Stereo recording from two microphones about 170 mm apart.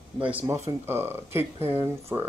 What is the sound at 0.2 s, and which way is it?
Speech, 10° right (ahead or behind).